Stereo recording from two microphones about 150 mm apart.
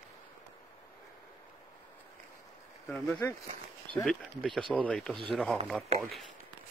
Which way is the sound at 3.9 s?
Centre (ahead or behind).